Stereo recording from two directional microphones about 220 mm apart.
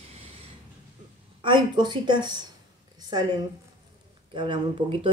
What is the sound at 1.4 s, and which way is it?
Speech, 20° right (ahead or behind).